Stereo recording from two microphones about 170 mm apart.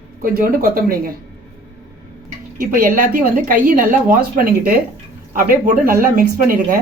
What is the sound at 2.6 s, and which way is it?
Speech, 60° right (ahead or behind).